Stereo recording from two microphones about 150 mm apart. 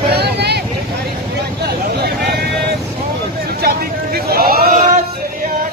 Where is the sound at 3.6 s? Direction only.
90° right.